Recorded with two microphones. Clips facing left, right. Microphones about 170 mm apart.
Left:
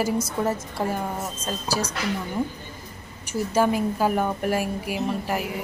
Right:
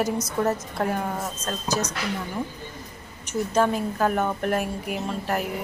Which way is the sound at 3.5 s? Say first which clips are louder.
Left 2 dB; 10° left (ahead or behind).